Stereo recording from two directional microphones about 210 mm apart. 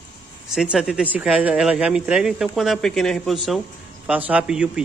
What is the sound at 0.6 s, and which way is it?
Speech, 5° right (ahead or behind).